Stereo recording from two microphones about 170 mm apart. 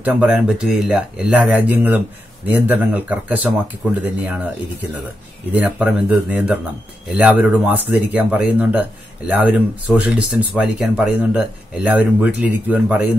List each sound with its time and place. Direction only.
0.0 s speech: 5° right (ahead or behind)
5.5 s speech: 10° right (ahead or behind)